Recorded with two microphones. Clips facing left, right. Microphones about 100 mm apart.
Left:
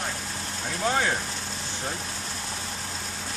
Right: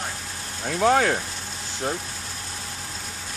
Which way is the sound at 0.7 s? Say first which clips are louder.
Right 7 dB; 65° right (ahead or behind).